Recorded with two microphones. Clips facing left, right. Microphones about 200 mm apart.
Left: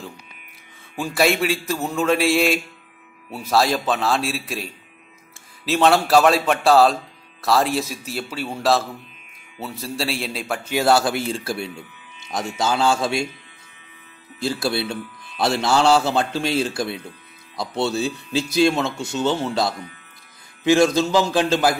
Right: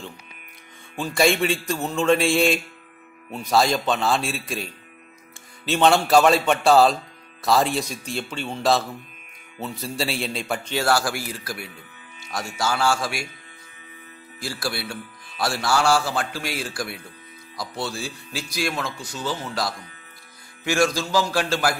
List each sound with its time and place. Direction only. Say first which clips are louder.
0.9 s a man's voice: left 1 dB; 5° left (ahead or behind)
5.7 s a man's voice: left 1 dB; centre (ahead or behind)
10.8 s a man's voice: left 5 dB; 20° left (ahead or behind)
14.4 s a man's voice: left 7 dB; 25° left (ahead or behind)